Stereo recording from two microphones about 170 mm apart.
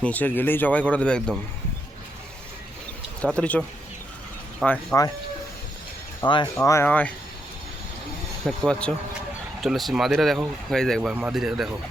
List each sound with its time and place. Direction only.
0.0 s speech: 10° left (ahead or behind)
3.2 s speech: 5° left (ahead or behind)
4.6 s speech: 5° left (ahead or behind)
6.2 s speech: 25° left (ahead or behind)
6.7 s speech: 15° left (ahead or behind)
8.4 s speech: 5° left (ahead or behind)